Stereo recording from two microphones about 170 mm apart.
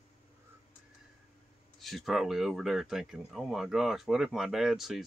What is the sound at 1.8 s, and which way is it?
Speech, centre (ahead or behind).